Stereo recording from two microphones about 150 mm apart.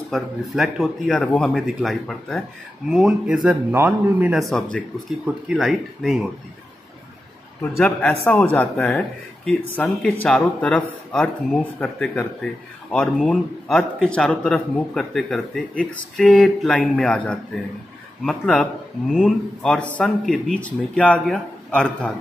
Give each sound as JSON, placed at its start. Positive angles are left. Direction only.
{"t": 0.1, "sound": "speech", "side_deg": 0}
{"t": 5.2, "sound": "speech", "side_deg": -5}
{"t": 7.7, "sound": "speech", "side_deg": 15}